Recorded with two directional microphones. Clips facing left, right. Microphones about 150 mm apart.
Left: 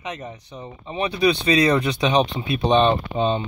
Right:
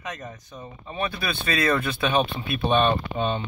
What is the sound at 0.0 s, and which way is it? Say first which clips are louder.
Speech: left 3 dB; 10° left (ahead or behind).